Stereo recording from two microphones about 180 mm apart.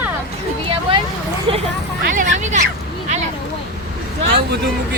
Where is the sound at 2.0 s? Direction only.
45° right (ahead or behind).